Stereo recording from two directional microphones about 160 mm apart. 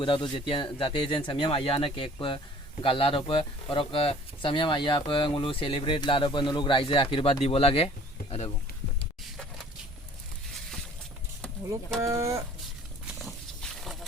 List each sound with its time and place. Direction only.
0.0 s speech: 35° left (ahead or behind)
8.2 s a sound: 65° left (ahead or behind)
11.9 s speech: 20° right (ahead or behind)
13.1 s wild animals: centre (ahead or behind)